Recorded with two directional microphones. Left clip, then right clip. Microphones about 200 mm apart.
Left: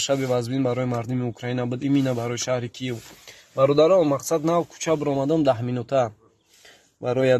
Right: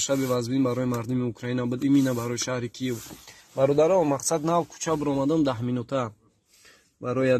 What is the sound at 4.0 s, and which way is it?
Speech, 20° left (ahead or behind).